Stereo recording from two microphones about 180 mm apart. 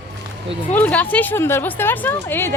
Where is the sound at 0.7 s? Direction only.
10° left (ahead or behind).